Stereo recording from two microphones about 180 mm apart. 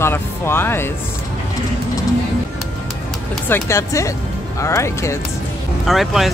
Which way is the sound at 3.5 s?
15° left (ahead or behind).